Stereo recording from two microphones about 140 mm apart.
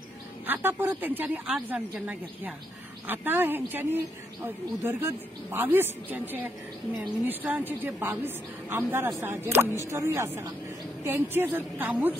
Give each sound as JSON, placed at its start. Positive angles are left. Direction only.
{"t": 0.5, "sound": "a woman's voice", "side_deg": -15}